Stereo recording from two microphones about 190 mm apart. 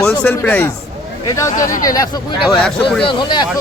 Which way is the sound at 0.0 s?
5° left (ahead or behind).